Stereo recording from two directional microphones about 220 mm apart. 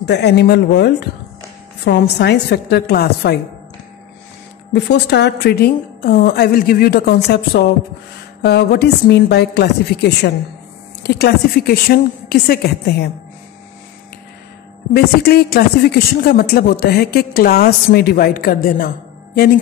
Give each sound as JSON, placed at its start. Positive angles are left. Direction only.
{"t": 0.0, "sound": "speech", "side_deg": 50}
{"t": 4.7, "sound": "speech", "side_deg": 50}
{"t": 15.2, "sound": "speech", "side_deg": 45}